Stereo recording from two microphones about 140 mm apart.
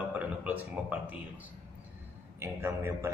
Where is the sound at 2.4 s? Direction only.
20° right (ahead or behind).